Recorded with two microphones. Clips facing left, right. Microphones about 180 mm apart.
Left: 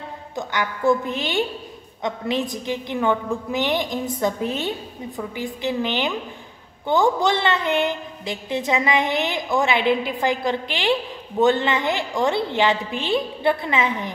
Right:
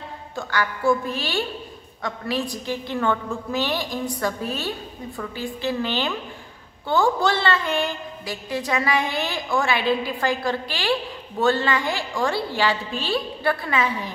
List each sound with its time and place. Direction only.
0.4 s a woman's voice: 20° left (ahead or behind)